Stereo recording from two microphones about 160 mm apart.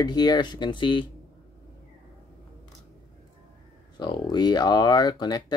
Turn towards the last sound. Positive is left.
turn(degrees=25)  # may be behind; listen again after turning